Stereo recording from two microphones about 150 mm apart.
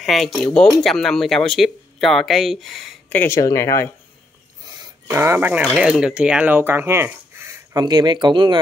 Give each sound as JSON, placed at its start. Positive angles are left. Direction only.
{"t": 0.0, "sound": "speech", "side_deg": 0}
{"t": 3.1, "sound": "speech", "side_deg": 15}
{"t": 4.6, "sound": "a sound", "side_deg": -25}
{"t": 5.2, "sound": "speech", "side_deg": -15}